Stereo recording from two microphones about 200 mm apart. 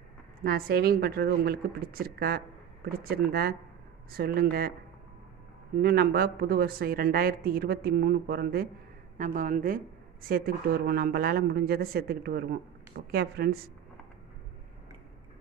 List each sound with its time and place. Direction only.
0.4 s speech: 50° right (ahead or behind)
5.8 s speech: 50° right (ahead or behind)